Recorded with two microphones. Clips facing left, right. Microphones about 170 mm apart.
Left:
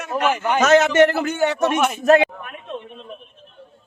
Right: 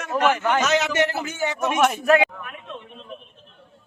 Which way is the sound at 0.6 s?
50° left (ahead or behind).